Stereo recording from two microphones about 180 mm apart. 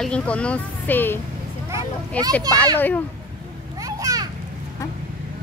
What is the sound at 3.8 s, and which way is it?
Children playing, 20° right (ahead or behind).